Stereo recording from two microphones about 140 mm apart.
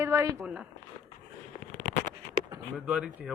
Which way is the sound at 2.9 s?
5° right (ahead or behind).